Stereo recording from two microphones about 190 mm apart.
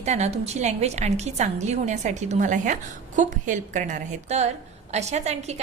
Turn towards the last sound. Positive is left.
turn(degrees=-35)  # may be behind; listen again after turning